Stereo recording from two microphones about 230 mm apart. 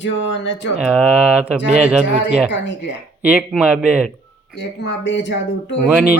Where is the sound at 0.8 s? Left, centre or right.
Centre.